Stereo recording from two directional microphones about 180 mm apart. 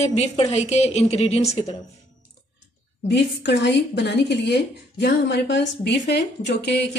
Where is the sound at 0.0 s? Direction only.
40° left (ahead or behind).